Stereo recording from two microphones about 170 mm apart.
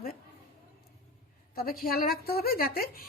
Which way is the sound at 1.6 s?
60° left (ahead or behind).